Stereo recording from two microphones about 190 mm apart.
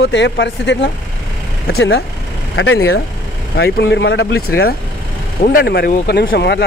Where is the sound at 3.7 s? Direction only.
65° left (ahead or behind).